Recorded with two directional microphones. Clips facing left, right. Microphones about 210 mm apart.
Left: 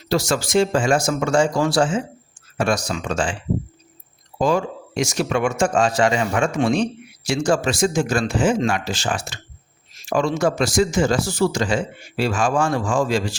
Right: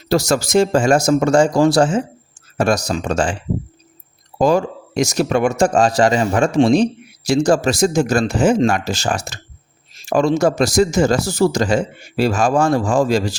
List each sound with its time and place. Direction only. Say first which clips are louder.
0.1 s speech: right 4 dB; 40° right (ahead or behind)
4.4 s speech: right 4 dB; 40° right (ahead or behind)